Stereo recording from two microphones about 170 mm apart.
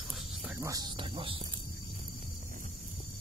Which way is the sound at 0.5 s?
20° right (ahead or behind).